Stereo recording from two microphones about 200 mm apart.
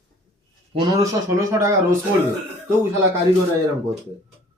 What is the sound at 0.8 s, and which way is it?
Speech, 15° right (ahead or behind).